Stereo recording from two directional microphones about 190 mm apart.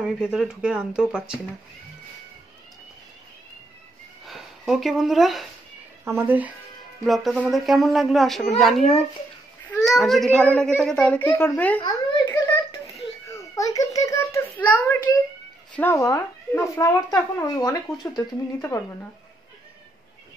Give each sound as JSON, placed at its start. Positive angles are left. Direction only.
{"t": 0.0, "sound": "speech", "side_deg": -5}
{"t": 4.3, "sound": "speech", "side_deg": 0}
{"t": 6.0, "sound": "a child's voice", "side_deg": -10}
{"t": 13.6, "sound": "speech", "side_deg": 20}